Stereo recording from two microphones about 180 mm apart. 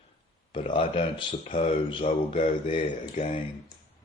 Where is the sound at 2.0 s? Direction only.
45° left (ahead or behind).